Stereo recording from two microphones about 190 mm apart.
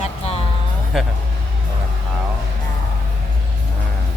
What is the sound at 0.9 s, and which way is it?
Speech, centre (ahead or behind).